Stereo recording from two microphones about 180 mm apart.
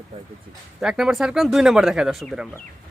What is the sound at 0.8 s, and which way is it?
Speech, 5° right (ahead or behind).